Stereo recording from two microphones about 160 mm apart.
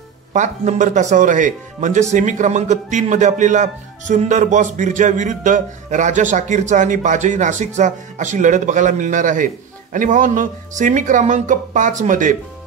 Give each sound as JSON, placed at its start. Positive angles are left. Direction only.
{"t": 0.3, "sound": "speech", "side_deg": -50}